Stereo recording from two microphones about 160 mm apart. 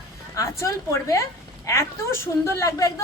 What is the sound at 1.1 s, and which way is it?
A woman's voice, 20° left (ahead or behind).